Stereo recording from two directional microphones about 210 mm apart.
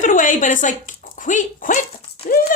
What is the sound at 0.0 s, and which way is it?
Speech, 40° left (ahead or behind).